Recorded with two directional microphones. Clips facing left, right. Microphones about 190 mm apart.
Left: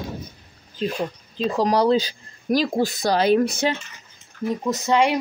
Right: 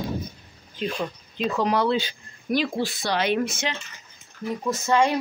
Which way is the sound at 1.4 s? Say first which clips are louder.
Left 3 dB; 35° left (ahead or behind).